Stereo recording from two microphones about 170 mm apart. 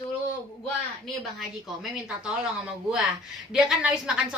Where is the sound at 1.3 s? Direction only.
5° right (ahead or behind).